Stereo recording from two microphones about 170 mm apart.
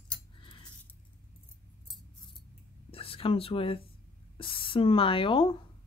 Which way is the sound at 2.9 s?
35° left (ahead or behind).